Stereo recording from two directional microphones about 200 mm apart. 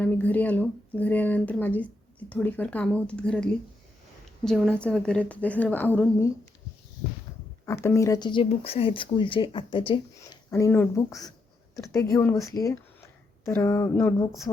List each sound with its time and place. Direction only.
0.0 s speech: 5° left (ahead or behind)
7.6 s speech: 15° left (ahead or behind)
10.5 s speech: 10° left (ahead or behind)